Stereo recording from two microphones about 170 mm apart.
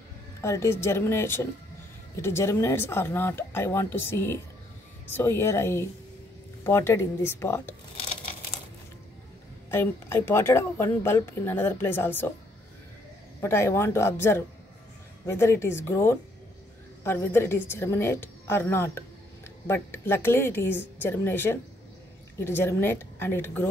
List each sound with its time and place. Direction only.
0.4 s a woman's voice: 15° left (ahead or behind)
9.7 s a woman's voice: 15° left (ahead or behind)
13.4 s a woman's voice: 15° left (ahead or behind)